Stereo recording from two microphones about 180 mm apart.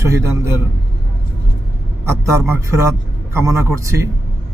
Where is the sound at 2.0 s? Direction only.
15° right (ahead or behind).